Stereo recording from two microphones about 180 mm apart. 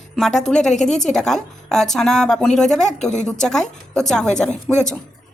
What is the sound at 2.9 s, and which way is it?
Speech, 40° left (ahead or behind).